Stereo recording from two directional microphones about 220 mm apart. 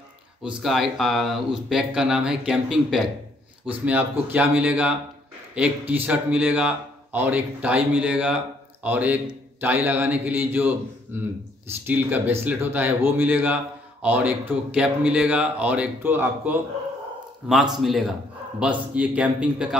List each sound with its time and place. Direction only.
0.4 s a man's voice: centre (ahead or behind)